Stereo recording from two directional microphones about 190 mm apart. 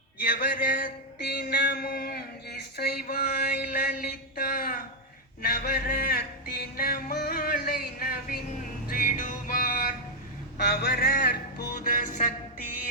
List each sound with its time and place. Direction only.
0.2 s mantra: 45° left (ahead or behind)
5.4 s a sound: 55° left (ahead or behind)
6.7 s music: 50° left (ahead or behind)